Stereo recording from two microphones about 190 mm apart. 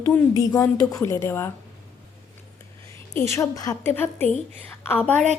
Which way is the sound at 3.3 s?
20° left (ahead or behind).